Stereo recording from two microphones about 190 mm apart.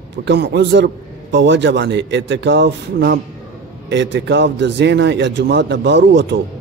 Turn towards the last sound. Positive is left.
turn(degrees=-70)  # may be behind; listen again after turning